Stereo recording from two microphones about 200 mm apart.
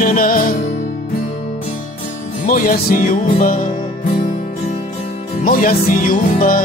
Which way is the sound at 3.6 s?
25° left (ahead or behind).